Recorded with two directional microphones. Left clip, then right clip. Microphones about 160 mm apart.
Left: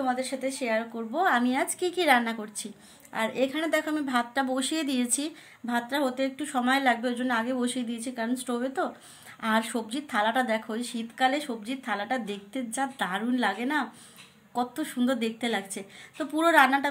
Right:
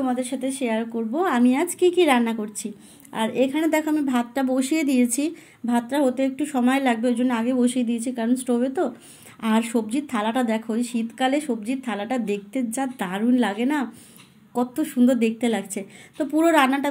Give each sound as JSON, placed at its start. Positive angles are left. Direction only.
{"t": 0.0, "sound": "a woman's voice", "side_deg": -10}